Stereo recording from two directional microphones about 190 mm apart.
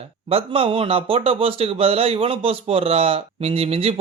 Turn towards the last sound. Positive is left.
turn(degrees=-30)  # may be behind; listen again after turning